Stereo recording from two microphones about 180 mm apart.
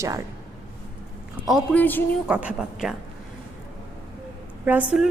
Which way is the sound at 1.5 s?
Centre (ahead or behind).